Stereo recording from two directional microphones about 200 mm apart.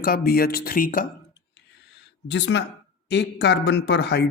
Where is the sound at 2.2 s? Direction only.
60° left (ahead or behind).